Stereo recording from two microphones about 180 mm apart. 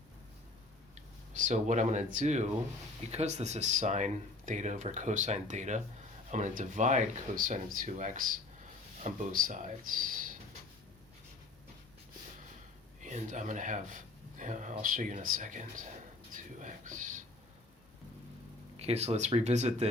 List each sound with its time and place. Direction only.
1.3 s speech: 40° right (ahead or behind)
13.0 s speech: 40° right (ahead or behind)
16.6 s a sound: 45° right (ahead or behind)
18.8 s speech: 35° right (ahead or behind)